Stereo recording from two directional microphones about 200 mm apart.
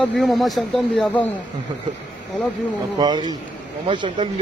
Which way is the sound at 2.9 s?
20° right (ahead or behind).